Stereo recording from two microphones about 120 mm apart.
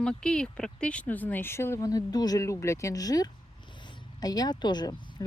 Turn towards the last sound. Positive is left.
turn(degrees=35)  # may be behind; listen again after turning